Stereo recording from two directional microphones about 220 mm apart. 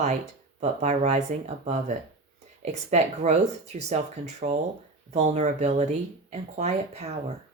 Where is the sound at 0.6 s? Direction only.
30° right (ahead or behind).